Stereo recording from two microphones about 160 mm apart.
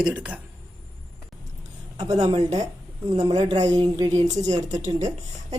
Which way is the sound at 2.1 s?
40° right (ahead or behind).